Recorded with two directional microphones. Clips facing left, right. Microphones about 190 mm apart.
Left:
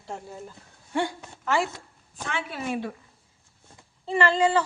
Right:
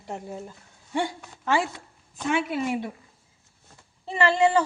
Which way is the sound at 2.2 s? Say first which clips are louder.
Right 6 dB; 15° right (ahead or behind).